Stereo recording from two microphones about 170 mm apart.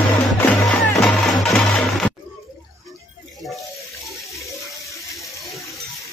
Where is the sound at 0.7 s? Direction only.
5° left (ahead or behind).